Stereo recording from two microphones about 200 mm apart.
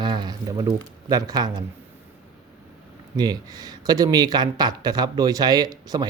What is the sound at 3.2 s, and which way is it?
Speech, 20° right (ahead or behind).